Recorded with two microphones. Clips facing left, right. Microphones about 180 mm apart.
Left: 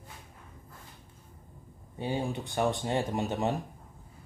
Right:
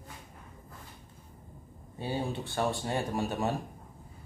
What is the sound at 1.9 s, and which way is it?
Speech, 15° left (ahead or behind).